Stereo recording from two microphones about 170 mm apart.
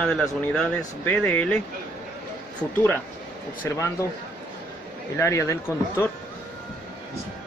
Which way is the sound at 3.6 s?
15° left (ahead or behind).